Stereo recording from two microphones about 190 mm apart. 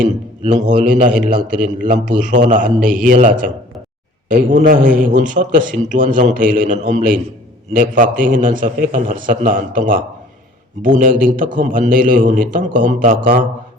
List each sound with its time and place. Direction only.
0.0 s a man's voice: 40° right (ahead or behind)